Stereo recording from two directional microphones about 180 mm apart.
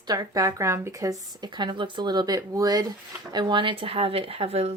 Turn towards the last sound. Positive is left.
turn(degrees=-35)  # may be behind; listen again after turning